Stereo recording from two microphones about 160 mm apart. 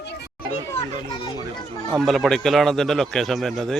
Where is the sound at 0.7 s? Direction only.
35° left (ahead or behind).